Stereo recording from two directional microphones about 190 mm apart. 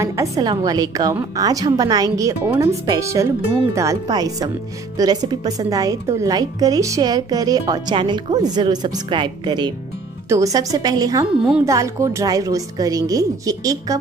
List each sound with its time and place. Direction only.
0.0 s a woman's voice: 15° right (ahead or behind)